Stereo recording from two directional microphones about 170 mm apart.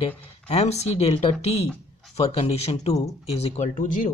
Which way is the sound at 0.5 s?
40° left (ahead or behind).